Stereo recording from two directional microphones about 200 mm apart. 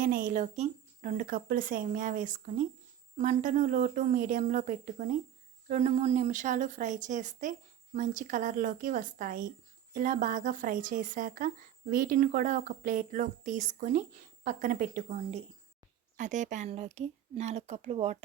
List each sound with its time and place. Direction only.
0.0 s a woman's voice: 45° right (ahead or behind)